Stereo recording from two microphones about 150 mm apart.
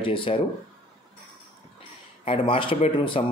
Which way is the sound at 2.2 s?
40° left (ahead or behind).